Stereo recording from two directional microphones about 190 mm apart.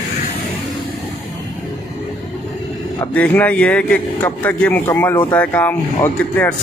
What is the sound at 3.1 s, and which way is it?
A man's voice, 10° left (ahead or behind).